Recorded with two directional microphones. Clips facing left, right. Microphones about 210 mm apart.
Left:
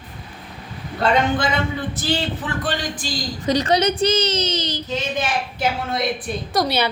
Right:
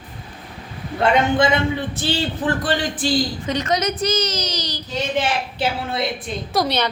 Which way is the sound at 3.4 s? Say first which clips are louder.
Left 3 dB; 35° left (ahead or behind).